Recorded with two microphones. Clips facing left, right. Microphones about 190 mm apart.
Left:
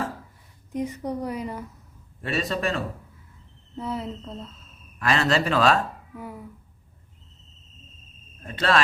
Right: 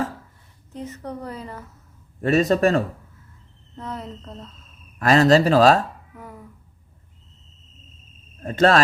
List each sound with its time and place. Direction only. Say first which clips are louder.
0.7 s a woman's voice: left 4 dB; 10° left (ahead or behind)
2.2 s speech: right 9 dB; 45° right (ahead or behind)
3.8 s a woman's voice: left 3 dB; 10° left (ahead or behind)
4.9 s speech: right 8 dB; 40° right (ahead or behind)
6.1 s a woman's voice: left 4 dB; 10° left (ahead or behind)
8.4 s speech: right 6 dB; 40° right (ahead or behind)